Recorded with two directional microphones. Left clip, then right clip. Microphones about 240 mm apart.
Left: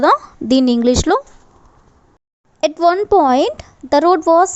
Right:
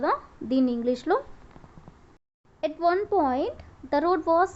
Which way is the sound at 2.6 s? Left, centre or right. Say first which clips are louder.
Left 11 dB; left.